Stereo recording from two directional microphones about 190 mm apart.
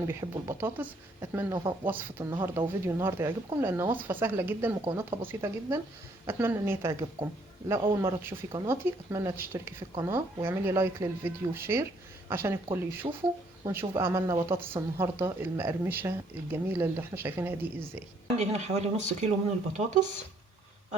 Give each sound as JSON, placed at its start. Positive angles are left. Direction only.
{"t": 0.1, "sound": "speech", "side_deg": -15}
{"t": 18.3, "sound": "speech", "side_deg": -35}